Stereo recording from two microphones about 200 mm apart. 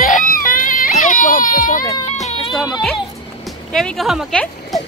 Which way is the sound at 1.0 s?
40° left (ahead or behind).